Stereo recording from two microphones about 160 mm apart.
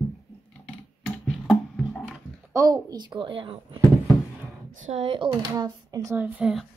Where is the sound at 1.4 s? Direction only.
Centre (ahead or behind).